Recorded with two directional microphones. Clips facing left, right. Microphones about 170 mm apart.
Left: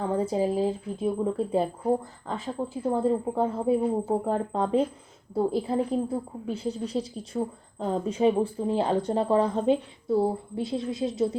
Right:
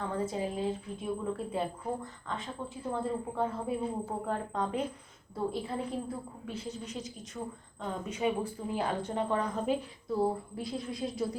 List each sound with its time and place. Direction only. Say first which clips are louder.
0.0 s a woman's voice: left 8 dB; 30° left (ahead or behind)